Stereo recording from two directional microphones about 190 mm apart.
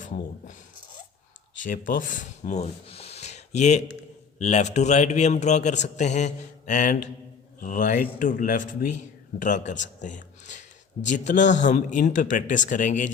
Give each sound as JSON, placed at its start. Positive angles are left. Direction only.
{"t": 0.0, "sound": "speech", "side_deg": 40}
{"t": 1.5, "sound": "a man's voice", "side_deg": 40}